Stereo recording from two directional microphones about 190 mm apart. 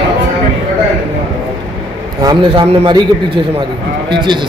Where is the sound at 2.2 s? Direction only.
25° right (ahead or behind).